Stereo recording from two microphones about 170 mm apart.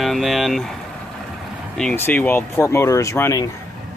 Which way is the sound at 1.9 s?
10° left (ahead or behind).